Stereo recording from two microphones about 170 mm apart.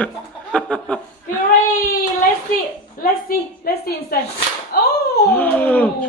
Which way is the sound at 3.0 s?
65° left (ahead or behind).